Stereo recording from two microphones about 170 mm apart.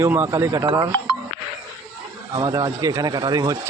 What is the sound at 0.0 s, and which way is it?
Speech, 15° right (ahead or behind).